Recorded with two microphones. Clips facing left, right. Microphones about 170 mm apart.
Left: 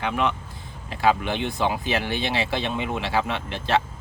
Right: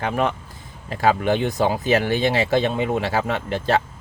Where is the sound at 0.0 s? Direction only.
45° right (ahead or behind).